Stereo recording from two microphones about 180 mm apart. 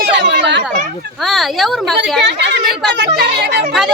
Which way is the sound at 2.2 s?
70° right (ahead or behind).